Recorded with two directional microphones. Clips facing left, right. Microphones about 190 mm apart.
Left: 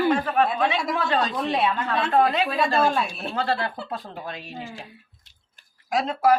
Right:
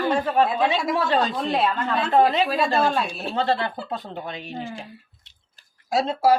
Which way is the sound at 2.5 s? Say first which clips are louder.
Right 1 dB; centre (ahead or behind).